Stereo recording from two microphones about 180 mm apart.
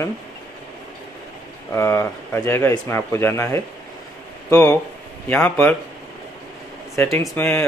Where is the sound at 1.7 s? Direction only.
15° left (ahead or behind).